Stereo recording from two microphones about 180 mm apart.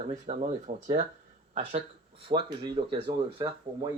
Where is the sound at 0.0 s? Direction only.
45° right (ahead or behind).